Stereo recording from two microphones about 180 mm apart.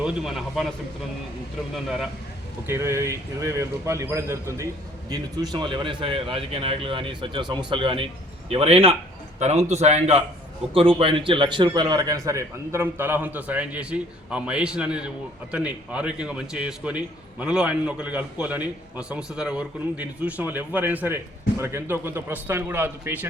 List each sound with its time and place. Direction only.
0.0 s a man's voice: centre (ahead or behind)
1.7 s a man's voice: 5° right (ahead or behind)
2.6 s a man's voice: 15° right (ahead or behind)